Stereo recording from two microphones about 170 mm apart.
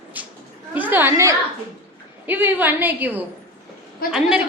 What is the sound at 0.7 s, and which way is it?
A woman's voice, 10° right (ahead or behind).